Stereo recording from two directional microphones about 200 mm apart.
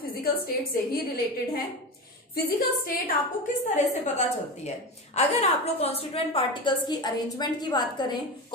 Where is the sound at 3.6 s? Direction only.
35° left (ahead or behind).